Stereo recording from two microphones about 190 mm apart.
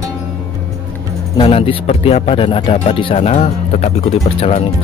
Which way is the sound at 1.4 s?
30° left (ahead or behind).